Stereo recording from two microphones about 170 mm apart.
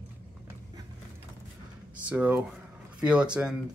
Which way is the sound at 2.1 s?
10° right (ahead or behind).